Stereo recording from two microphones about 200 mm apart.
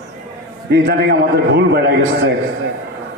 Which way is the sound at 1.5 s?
55° right (ahead or behind).